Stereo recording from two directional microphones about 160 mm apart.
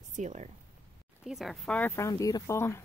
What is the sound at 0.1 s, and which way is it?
Speech, 50° right (ahead or behind).